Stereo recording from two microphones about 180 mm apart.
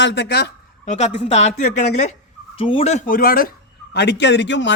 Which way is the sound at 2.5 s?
30° left (ahead or behind).